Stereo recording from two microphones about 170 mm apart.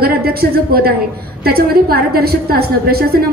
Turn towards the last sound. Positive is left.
turn(degrees=-65)  # may be behind; listen again after turning